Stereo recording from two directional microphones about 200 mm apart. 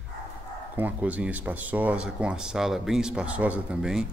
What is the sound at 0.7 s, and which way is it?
Speech, 10° right (ahead or behind).